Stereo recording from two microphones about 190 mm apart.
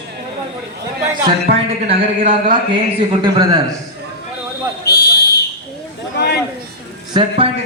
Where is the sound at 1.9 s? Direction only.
30° right (ahead or behind).